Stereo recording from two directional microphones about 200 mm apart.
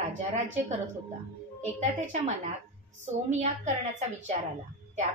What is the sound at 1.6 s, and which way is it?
A woman's voice, 35° right (ahead or behind).